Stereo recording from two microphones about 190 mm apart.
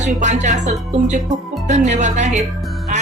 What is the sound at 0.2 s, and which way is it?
A woman's voice, 40° right (ahead or behind).